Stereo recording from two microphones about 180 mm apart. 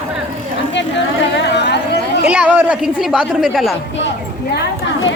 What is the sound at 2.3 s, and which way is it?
A woman's voice, 10° right (ahead or behind).